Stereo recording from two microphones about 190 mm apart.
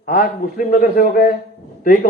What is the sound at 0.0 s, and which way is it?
A man's voice, 45° left (ahead or behind).